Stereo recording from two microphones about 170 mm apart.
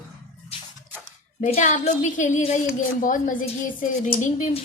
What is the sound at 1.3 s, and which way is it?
A woman's voice, 45° left (ahead or behind).